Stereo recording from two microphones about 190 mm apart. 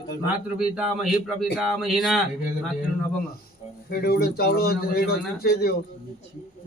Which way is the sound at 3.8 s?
55° left (ahead or behind).